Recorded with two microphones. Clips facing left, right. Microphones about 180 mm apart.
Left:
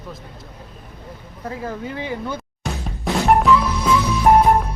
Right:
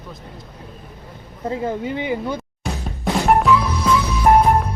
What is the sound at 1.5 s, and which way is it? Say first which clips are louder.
Speech: right 5 dB; 25° right (ahead or behind).